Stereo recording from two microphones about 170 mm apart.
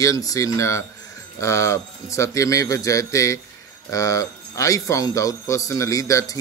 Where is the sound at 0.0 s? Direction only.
20° left (ahead or behind).